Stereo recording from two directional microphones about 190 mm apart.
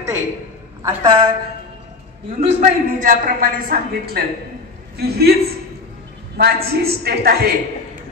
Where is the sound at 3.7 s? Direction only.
55° right (ahead or behind).